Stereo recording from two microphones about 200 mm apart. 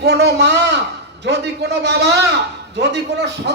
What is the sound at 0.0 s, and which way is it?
A man's voice, 55° right (ahead or behind).